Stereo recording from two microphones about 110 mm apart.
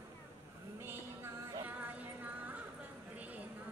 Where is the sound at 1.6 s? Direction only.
15° right (ahead or behind).